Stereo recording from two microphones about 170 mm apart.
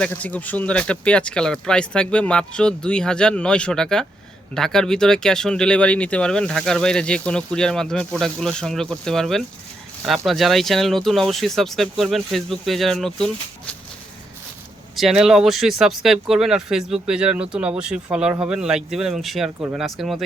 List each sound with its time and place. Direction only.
0.0 s speech: 10° left (ahead or behind)
14.9 s speech: centre (ahead or behind)